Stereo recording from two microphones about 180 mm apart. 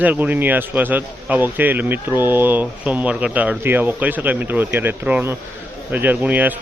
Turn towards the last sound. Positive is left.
turn(degrees=-10)  # may be behind; listen again after turning